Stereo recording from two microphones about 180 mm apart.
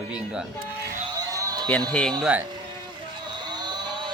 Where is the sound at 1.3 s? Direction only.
20° right (ahead or behind).